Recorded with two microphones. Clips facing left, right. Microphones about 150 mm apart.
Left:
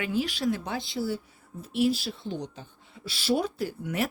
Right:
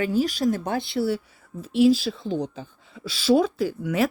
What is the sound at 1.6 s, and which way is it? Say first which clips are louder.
Speech: right 7 dB; 90° right.